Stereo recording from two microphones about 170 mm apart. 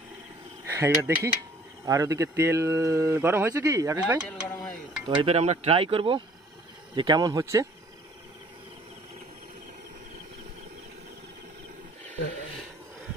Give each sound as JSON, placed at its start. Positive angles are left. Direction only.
{"t": 0.7, "sound": "speech", "side_deg": -15}
{"t": 4.3, "sound": "a sound", "side_deg": 5}
{"t": 5.0, "sound": "speech", "side_deg": -35}